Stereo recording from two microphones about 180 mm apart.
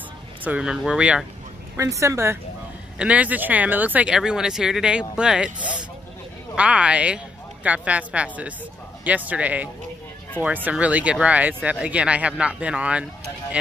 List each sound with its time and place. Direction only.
0.4 s speech: 5° right (ahead or behind)
1.8 s speech: 15° right (ahead or behind)